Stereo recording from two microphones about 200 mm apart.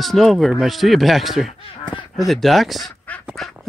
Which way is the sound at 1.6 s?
25° left (ahead or behind).